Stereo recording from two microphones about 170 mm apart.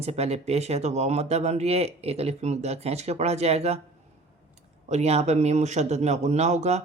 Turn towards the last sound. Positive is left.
turn(degrees=-40)  # may be behind; listen again after turning